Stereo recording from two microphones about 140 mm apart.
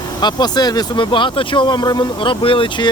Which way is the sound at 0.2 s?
30° left (ahead or behind).